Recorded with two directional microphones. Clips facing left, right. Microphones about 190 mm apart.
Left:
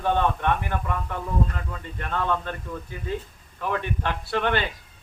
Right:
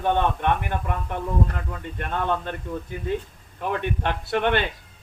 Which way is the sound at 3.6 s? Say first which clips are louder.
Right 1 dB; 20° right (ahead or behind).